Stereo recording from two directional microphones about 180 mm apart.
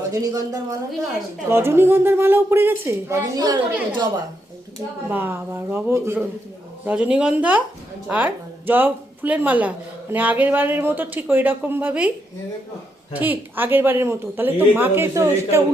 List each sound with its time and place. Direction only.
0.1 s a woman's voice: 20° right (ahead or behind)
5.0 s speech: 10° right (ahead or behind)
13.1 s speech: 10° right (ahead or behind)